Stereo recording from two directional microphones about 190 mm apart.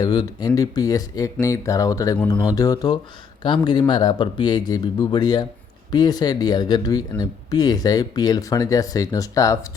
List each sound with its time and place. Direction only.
0.0 s speech: 20° left (ahead or behind)